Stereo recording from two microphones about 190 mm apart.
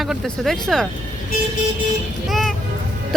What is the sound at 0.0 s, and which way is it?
Speech, centre (ahead or behind).